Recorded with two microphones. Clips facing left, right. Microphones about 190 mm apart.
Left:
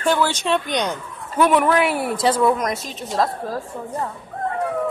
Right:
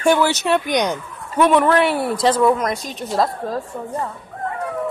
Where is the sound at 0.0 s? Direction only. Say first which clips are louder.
Right 3 dB; 10° right (ahead or behind).